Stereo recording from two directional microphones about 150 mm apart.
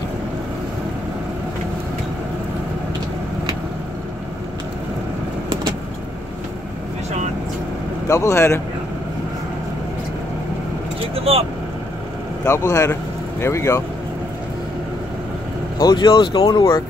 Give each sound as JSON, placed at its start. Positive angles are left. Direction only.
{"t": 8.1, "sound": "speech", "side_deg": 20}
{"t": 11.1, "sound": "speech", "side_deg": -40}
{"t": 12.4, "sound": "speech", "side_deg": 20}
{"t": 15.8, "sound": "speech", "side_deg": 30}